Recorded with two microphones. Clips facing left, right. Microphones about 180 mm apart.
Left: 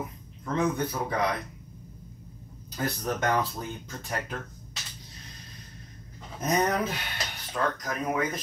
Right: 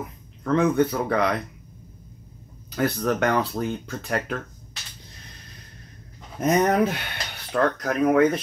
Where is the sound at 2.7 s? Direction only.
70° right (ahead or behind).